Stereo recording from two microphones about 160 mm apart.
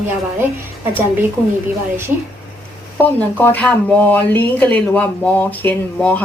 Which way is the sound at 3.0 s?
10° left (ahead or behind).